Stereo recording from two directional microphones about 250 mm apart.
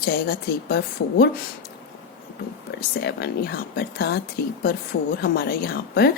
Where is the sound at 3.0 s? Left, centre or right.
Left.